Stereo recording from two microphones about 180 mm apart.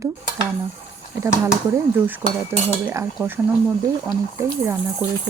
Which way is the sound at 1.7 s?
10° right (ahead or behind).